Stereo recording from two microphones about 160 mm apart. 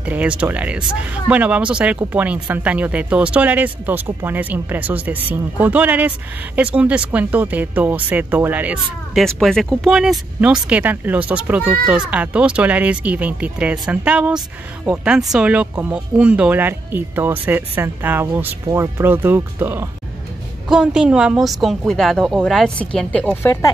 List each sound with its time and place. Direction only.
0.0 s speech: 10° right (ahead or behind)
9.1 s a woman's voice: centre (ahead or behind)
23.3 s speech: 15° left (ahead or behind)